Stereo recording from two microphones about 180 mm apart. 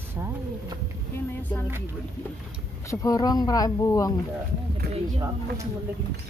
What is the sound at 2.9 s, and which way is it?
Speech, 20° left (ahead or behind).